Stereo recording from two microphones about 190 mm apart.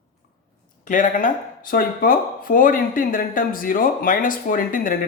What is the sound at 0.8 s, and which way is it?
Speech, 45° left (ahead or behind).